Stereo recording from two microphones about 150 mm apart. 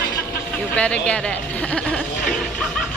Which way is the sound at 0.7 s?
10° left (ahead or behind).